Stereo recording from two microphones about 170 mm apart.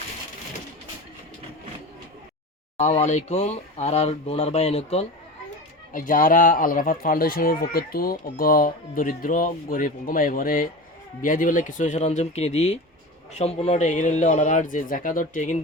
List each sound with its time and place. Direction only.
2.7 s speech: 40° left (ahead or behind)
5.9 s speech: 50° left (ahead or behind)